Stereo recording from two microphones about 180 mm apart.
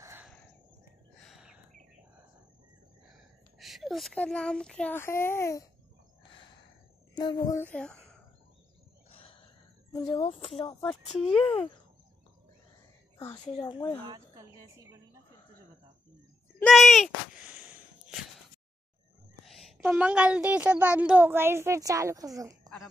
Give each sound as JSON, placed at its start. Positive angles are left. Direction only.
{"t": 0.0, "sound": "a sound", "side_deg": -15}
{"t": 1.2, "sound": "chirp", "side_deg": 0}
{"t": 3.1, "sound": "a child's voice", "side_deg": 0}
{"t": 7.2, "sound": "speech", "side_deg": 20}
{"t": 7.6, "sound": "speech", "side_deg": 5}
{"t": 9.9, "sound": "speech", "side_deg": 25}
{"t": 13.3, "sound": "speech", "side_deg": 25}
{"t": 14.3, "sound": "speech", "side_deg": -15}
{"t": 16.5, "sound": "speech", "side_deg": 5}
{"t": 19.8, "sound": "speech", "side_deg": -10}